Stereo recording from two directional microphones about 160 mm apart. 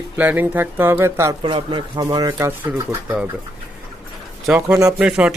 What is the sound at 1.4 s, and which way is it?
Speech, 30° right (ahead or behind).